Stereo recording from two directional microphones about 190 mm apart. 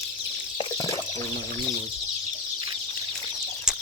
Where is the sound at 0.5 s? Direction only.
20° left (ahead or behind).